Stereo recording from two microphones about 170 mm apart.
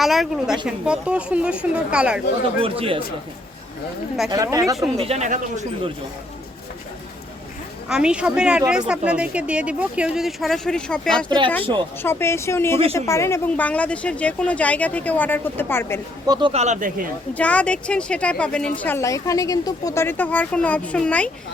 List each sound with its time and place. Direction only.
0.0 s a woman's voice: centre (ahead or behind)
2.6 s speech: 35° right (ahead or behind)
4.3 s speech: 20° right (ahead or behind)
4.9 s speech: 40° right (ahead or behind)
7.9 s a woman's voice: 5° right (ahead or behind)
12.0 s speech: 15° left (ahead or behind)
16.2 s a man's voice: 25° right (ahead or behind)
16.5 s speech: 40° right (ahead or behind)
17.3 s speech: 10° left (ahead or behind)